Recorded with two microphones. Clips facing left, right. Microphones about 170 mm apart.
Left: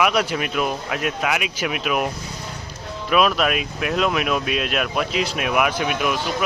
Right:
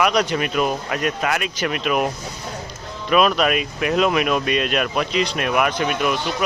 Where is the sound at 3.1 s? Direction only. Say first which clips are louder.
Right 2 dB; centre (ahead or behind).